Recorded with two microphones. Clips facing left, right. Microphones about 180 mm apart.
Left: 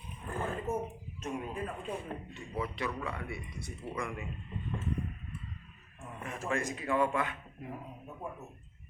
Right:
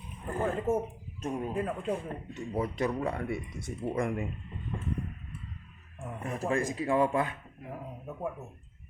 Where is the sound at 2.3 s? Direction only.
45° right (ahead or behind).